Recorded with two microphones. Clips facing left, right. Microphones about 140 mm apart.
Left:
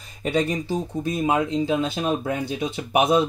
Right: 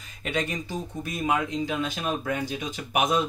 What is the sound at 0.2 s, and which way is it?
Speech, 35° left (ahead or behind).